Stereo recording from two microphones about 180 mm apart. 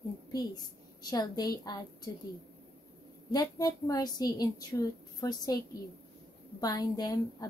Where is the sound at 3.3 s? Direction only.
20° left (ahead or behind).